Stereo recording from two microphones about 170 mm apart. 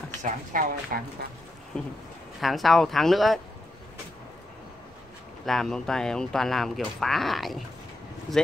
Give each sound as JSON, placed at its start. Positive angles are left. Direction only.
{"t": 0.2, "sound": "speech", "side_deg": -50}
{"t": 2.4, "sound": "speech", "side_deg": 0}
{"t": 5.4, "sound": "speech", "side_deg": 0}